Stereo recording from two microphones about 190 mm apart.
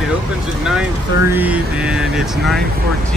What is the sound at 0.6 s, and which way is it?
Speech, 5° right (ahead or behind).